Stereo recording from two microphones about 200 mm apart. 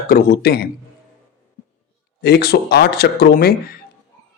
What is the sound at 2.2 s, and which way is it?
A man's voice, 55° left (ahead or behind).